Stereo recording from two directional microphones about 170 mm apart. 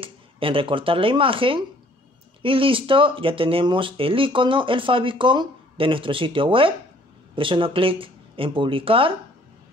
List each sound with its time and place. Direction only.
0.0 s speech: 30° right (ahead or behind)